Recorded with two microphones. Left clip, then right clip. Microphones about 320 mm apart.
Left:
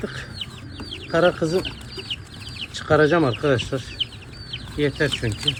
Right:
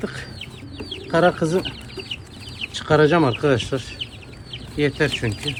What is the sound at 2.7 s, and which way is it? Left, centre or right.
Speech, right.